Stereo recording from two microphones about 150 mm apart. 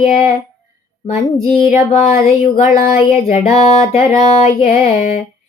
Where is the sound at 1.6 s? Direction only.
70° left (ahead or behind).